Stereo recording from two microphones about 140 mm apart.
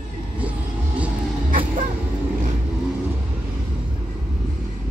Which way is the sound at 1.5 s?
75° right (ahead or behind).